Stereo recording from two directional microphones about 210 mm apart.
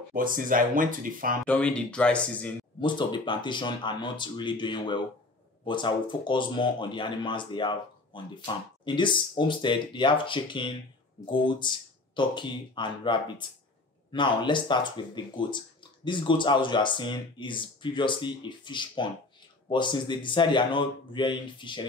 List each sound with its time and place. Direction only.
0.1 s speech: 40° right (ahead or behind)
1.4 s speech: 5° left (ahead or behind)
2.8 s speech: 20° left (ahead or behind)